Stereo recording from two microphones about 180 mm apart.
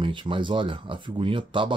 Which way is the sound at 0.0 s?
30° right (ahead or behind).